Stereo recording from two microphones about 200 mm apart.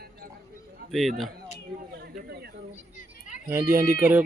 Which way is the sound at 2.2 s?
50° right (ahead or behind).